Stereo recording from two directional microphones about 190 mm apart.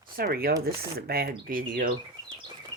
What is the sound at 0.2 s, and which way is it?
Speech, 50° right (ahead or behind).